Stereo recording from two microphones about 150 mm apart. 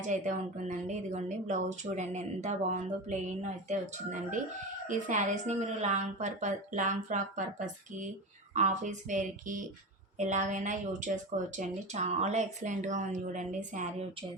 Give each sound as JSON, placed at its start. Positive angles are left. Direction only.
{"t": 0.0, "sound": "speech", "side_deg": -55}